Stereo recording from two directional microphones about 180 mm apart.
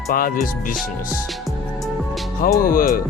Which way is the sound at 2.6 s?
50° left (ahead or behind).